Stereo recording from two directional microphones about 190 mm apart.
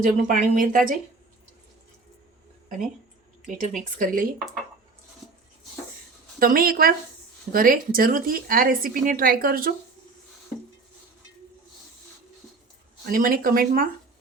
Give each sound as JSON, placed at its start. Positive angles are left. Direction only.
{"t": 0.0, "sound": "a woman's voice", "side_deg": -45}
{"t": 3.4, "sound": "speech", "side_deg": 0}
{"t": 3.9, "sound": "a woman's voice", "side_deg": -45}
{"t": 6.4, "sound": "a woman's voice", "side_deg": -50}
{"t": 13.1, "sound": "a woman's voice", "side_deg": -50}